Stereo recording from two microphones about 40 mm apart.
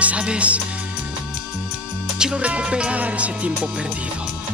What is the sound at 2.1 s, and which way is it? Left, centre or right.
Music, centre.